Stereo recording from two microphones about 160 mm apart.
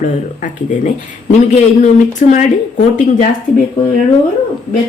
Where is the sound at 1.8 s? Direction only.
50° left (ahead or behind).